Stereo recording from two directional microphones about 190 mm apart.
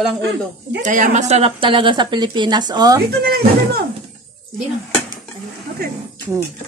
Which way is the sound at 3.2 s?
60° right (ahead or behind).